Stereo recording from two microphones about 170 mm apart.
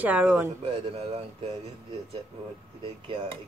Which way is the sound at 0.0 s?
10° right (ahead or behind).